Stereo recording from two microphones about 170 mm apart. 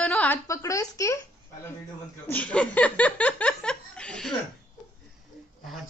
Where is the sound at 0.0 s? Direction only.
10° left (ahead or behind).